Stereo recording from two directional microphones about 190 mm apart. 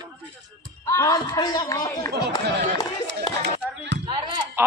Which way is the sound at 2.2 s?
55° right (ahead or behind).